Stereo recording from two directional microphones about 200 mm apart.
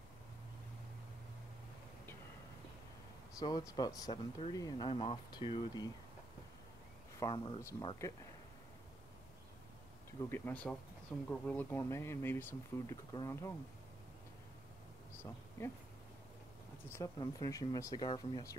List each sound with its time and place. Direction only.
3.3 s speech: 20° left (ahead or behind)
7.2 s speech: 20° left (ahead or behind)
10.3 s speech: 10° left (ahead or behind)
15.6 s speech: 15° left (ahead or behind)
17.2 s speech: 20° left (ahead or behind)